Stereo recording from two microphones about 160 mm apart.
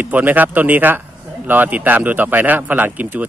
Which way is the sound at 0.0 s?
10° right (ahead or behind).